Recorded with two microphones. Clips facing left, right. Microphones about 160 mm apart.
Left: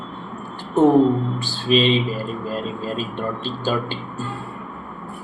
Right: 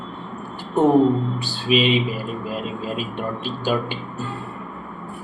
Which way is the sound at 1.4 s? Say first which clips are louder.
Left 1 dB; 10° right (ahead or behind).